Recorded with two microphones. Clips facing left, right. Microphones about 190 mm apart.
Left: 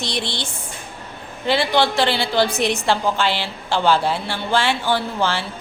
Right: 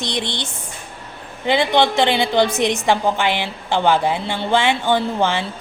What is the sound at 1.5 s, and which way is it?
A woman's voice, 20° right (ahead or behind).